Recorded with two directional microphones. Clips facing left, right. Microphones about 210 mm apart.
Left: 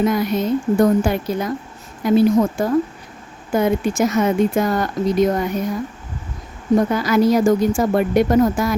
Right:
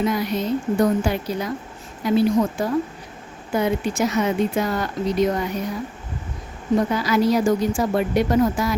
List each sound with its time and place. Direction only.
0.0 s speech: 50° left (ahead or behind)
6.7 s speech: 50° left (ahead or behind)